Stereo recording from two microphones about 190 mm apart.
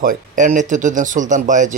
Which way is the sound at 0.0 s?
45° right (ahead or behind).